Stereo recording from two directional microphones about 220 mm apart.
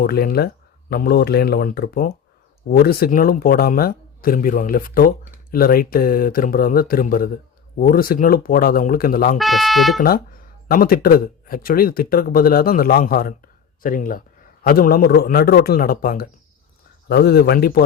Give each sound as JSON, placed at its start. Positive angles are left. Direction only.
{"t": 0.0, "sound": "speech", "side_deg": 45}
{"t": 9.4, "sound": "speech", "side_deg": 0}
{"t": 10.7, "sound": "speech", "side_deg": 40}